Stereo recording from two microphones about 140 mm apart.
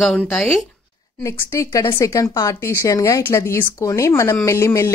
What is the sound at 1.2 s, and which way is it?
Speech, 20° left (ahead or behind).